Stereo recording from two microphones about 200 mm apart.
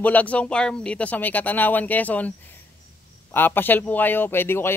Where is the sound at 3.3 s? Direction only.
10° left (ahead or behind).